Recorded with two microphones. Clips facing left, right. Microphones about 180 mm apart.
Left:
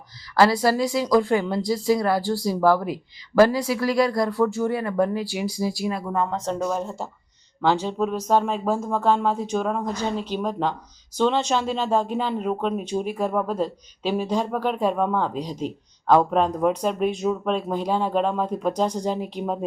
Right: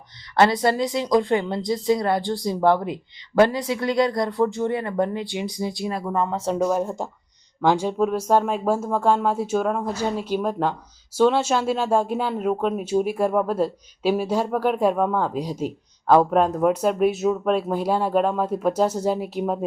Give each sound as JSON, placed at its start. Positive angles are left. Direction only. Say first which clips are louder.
{"t": 0.3, "sound": "speech", "louder": "even", "side_deg": -25}
{"t": 5.1, "sound": "speech", "louder": "left 1 dB", "side_deg": 5}